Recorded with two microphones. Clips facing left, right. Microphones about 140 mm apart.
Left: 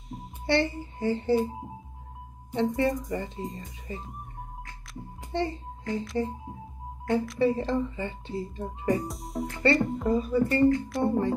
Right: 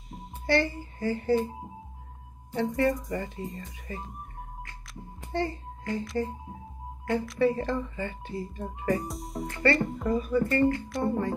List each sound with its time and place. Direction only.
0.5 s speech: 25° left (ahead or behind)
2.5 s speech: 25° left (ahead or behind)
5.3 s a child's voice: 25° left (ahead or behind)
7.3 s speech: 25° left (ahead or behind)
9.0 s music: centre (ahead or behind)
9.8 s speech: centre (ahead or behind)
10.0 s speech: 30° left (ahead or behind)
10.6 s speech: centre (ahead or behind)
11.1 s speech: 25° left (ahead or behind)